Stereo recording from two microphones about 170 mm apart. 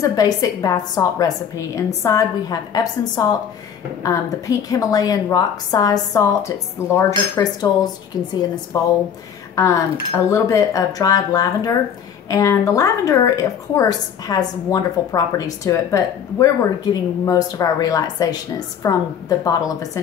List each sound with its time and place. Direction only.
0.0 s a woman's voice: 20° left (ahead or behind)